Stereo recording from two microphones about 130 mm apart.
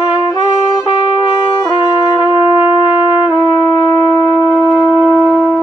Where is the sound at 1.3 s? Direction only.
35° left (ahead or behind).